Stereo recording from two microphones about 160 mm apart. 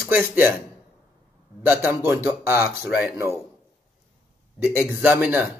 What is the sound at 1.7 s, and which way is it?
Speech, 10° right (ahead or behind).